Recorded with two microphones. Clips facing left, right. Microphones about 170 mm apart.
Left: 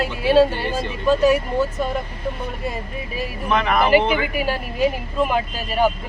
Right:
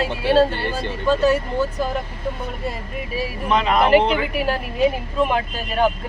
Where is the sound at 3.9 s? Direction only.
5° left (ahead or behind).